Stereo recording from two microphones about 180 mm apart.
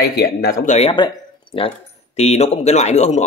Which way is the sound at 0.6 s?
40° left (ahead or behind).